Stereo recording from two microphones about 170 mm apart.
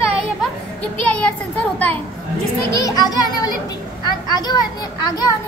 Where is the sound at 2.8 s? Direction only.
25° left (ahead or behind).